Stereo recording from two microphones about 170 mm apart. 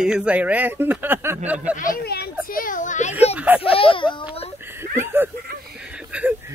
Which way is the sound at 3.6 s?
35° left (ahead or behind).